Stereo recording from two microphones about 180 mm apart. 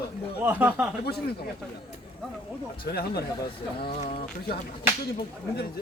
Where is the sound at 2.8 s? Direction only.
60° left (ahead or behind).